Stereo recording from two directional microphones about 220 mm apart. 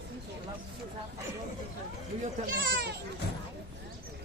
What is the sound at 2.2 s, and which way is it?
Speech, 45° right (ahead or behind).